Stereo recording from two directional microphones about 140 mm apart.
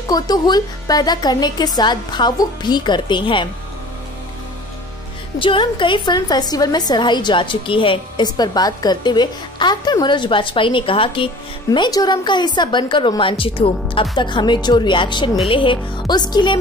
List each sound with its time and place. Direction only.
0.1 s a woman's voice: 30° left (ahead or behind)
5.4 s a woman's voice: 35° left (ahead or behind)